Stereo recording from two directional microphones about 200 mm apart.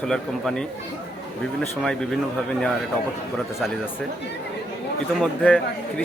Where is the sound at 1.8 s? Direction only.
5° left (ahead or behind).